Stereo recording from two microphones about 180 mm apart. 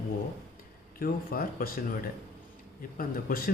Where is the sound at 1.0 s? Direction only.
55° left (ahead or behind).